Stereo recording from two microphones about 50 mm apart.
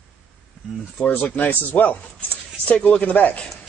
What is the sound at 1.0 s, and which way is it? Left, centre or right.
Speech, left.